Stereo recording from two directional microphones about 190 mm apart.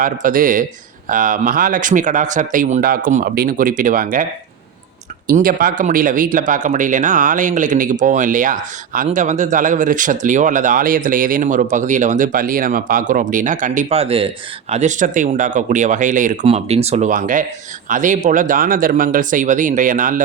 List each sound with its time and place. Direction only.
0.0 s speech: 45° right (ahead or behind)
5.3 s speech: 50° right (ahead or behind)